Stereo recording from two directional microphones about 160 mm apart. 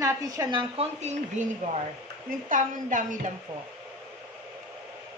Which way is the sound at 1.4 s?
50° right (ahead or behind).